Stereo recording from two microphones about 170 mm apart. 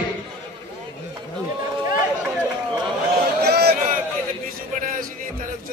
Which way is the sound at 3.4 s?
70° right (ahead or behind).